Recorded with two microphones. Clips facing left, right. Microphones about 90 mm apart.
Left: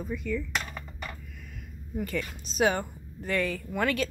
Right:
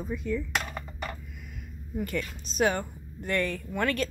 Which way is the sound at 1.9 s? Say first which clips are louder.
Even; centre (ahead or behind).